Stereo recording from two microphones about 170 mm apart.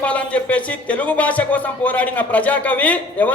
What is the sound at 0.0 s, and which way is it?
A man's voice, 10° left (ahead or behind).